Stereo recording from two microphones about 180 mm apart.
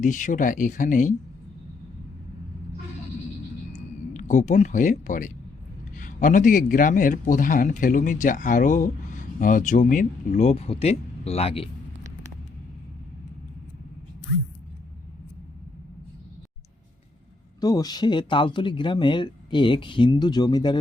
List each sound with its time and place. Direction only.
0.0 s a man's voice: 45° left (ahead or behind)
3.7 s a sound: 45° left (ahead or behind)
6.0 s a man's voice: 45° left (ahead or behind)
17.6 s speech: 20° left (ahead or behind)